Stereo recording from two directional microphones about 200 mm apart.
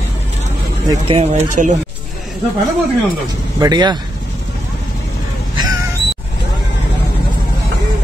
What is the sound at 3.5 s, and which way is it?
Speech, 20° right (ahead or behind).